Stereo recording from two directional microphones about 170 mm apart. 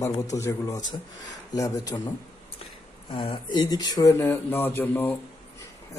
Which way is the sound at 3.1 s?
30° left (ahead or behind).